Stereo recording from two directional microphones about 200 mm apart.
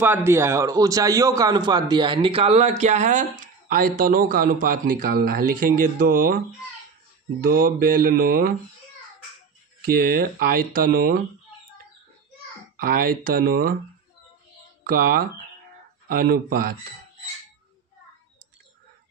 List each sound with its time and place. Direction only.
0.0 s a man's voice: 10° right (ahead or behind); by 6.4 s 45° right (ahead or behind)
7.4 s speech: 50° right (ahead or behind)
9.9 s speech: 50° right (ahead or behind)
12.7 s speech: 45° right (ahead or behind)
14.8 s speech: 45° right (ahead or behind)